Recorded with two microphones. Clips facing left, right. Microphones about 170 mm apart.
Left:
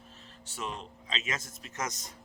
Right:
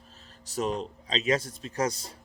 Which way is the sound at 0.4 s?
40° right (ahead or behind).